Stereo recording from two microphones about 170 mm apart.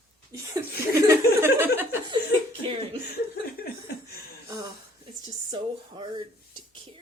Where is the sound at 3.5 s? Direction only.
65° left (ahead or behind).